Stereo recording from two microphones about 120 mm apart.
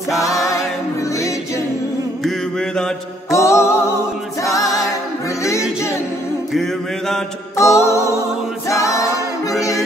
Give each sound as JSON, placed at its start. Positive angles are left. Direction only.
{"t": 0.2, "sound": "music", "side_deg": 30}
{"t": 2.2, "sound": "mantra", "side_deg": 0}
{"t": 3.3, "sound": "music", "side_deg": 25}
{"t": 4.4, "sound": "a capella", "side_deg": 30}
{"t": 5.4, "sound": "music", "side_deg": 25}
{"t": 6.5, "sound": "music", "side_deg": 5}
{"t": 7.5, "sound": "music", "side_deg": 25}
{"t": 8.6, "sound": "a capella", "side_deg": 25}